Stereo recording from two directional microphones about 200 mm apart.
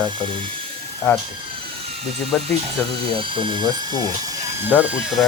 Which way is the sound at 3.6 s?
20° left (ahead or behind).